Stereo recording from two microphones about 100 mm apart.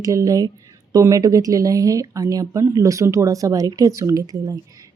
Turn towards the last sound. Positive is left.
turn(degrees=-40)  # may be behind; listen again after turning